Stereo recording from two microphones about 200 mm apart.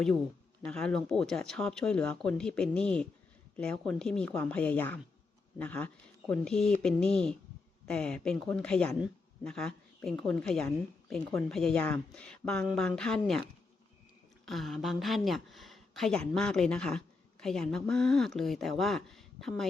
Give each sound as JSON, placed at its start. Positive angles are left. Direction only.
{"t": 0.6, "sound": "speech", "side_deg": 5}
{"t": 14.4, "sound": "speech", "side_deg": 0}